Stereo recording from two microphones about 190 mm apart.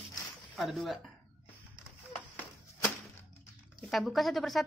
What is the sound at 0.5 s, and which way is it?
Speech, centre (ahead or behind).